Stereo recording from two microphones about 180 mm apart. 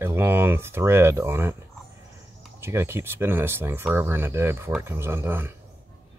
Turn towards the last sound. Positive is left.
turn(degrees=-10)  # may be behind; listen again after turning